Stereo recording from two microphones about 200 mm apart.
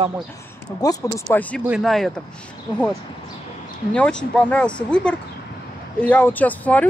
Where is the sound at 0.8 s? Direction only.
20° left (ahead or behind); by 2.1 s centre (ahead or behind).